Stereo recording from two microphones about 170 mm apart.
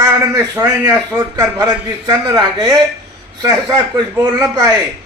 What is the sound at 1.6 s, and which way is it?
A man's voice, 20° right (ahead or behind).